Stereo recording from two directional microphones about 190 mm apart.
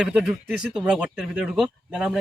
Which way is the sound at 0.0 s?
5° right (ahead or behind).